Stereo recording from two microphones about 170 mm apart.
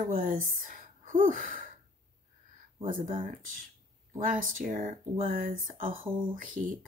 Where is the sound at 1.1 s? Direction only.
50° right (ahead or behind).